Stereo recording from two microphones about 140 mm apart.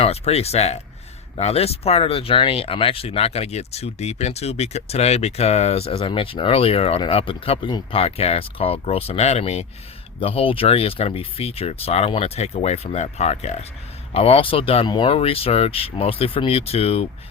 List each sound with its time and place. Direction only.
0.0 s speech: 45° left (ahead or behind)